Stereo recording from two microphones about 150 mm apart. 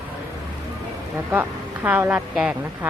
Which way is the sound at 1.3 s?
10° right (ahead or behind).